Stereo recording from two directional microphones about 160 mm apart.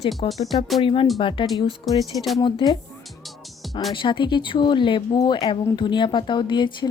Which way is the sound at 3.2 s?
Centre (ahead or behind).